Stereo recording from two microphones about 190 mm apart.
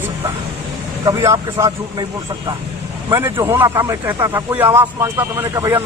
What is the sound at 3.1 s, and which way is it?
Speech, 15° right (ahead or behind).